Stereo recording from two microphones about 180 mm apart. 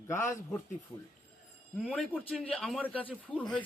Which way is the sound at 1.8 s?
5° right (ahead or behind).